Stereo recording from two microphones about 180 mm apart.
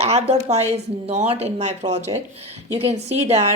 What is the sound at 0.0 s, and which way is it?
Speech, 35° right (ahead or behind).